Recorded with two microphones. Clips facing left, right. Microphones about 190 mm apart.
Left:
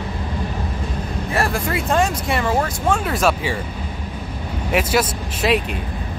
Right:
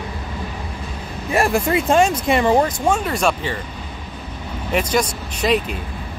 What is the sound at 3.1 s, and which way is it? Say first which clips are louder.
Speech: left 1 dB; centre (ahead or behind).